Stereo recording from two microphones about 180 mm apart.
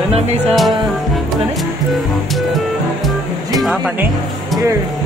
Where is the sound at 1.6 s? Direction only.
Centre (ahead or behind).